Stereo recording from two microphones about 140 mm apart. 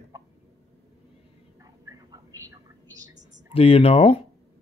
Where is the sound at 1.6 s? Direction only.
25° right (ahead or behind).